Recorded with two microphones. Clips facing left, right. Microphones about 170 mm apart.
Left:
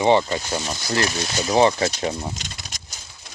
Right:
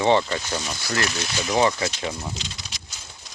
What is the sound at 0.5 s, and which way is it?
Speech, 25° left (ahead or behind).